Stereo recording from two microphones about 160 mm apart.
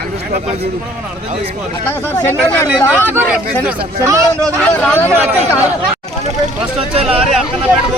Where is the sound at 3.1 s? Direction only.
10° right (ahead or behind).